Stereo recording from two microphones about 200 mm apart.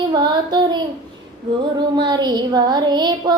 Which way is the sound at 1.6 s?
20° right (ahead or behind).